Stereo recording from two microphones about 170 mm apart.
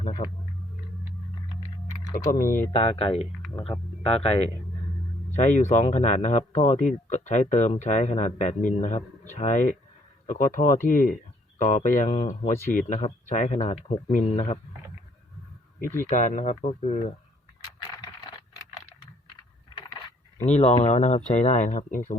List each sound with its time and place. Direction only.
0.0 s speech: 35° left (ahead or behind)
2.1 s speech: 55° left (ahead or behind)
2.7 s speech: 35° left (ahead or behind)
15.8 s speech: 15° left (ahead or behind)
16.0 s speech: 45° left (ahead or behind)
17.8 s a sound: 20° left (ahead or behind)
20.4 s speech: 40° left (ahead or behind)